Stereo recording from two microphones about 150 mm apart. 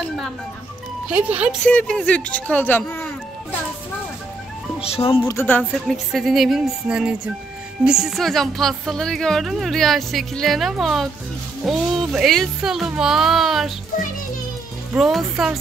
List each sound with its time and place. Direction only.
1.0 s speech: 5° right (ahead or behind)
1.7 s speech: 5° left (ahead or behind)
4.9 s speech: 40° left (ahead or behind)
5.2 s speech: 15° left (ahead or behind); by 13.7 s centre (ahead or behind)
15.0 s speech: centre (ahead or behind)